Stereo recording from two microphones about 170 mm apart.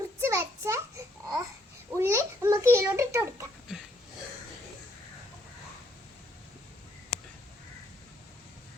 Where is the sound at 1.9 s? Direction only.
15° right (ahead or behind).